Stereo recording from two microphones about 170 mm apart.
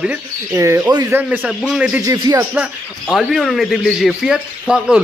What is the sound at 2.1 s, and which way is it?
Speech, 20° right (ahead or behind).